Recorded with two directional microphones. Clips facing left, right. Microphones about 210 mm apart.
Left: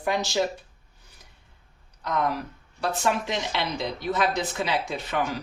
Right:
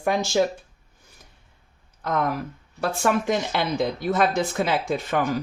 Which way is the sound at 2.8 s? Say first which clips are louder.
Right 3 dB; 50° right (ahead or behind).